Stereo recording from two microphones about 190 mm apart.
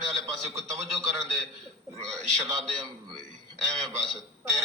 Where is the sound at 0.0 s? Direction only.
Centre (ahead or behind).